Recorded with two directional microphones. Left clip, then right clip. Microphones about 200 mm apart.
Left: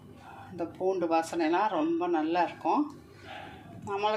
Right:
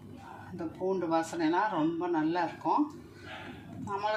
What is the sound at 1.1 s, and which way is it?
Speech, 50° left (ahead or behind).